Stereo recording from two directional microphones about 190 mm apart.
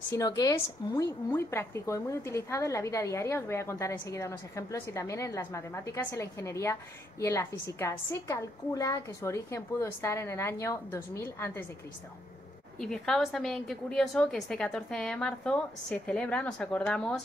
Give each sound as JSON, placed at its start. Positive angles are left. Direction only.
{"t": 0.1, "sound": "a woman's voice", "side_deg": 15}
{"t": 12.7, "sound": "a woman's voice", "side_deg": 5}